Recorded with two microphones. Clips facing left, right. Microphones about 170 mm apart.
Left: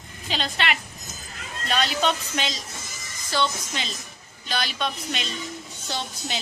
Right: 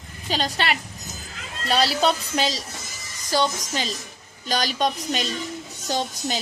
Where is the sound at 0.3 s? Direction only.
40° right (ahead or behind).